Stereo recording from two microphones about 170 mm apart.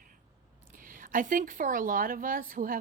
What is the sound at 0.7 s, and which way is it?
Speech, 55° right (ahead or behind).